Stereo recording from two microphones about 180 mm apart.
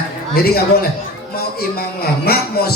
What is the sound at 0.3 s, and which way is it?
A man's voice, 60° left (ahead or behind).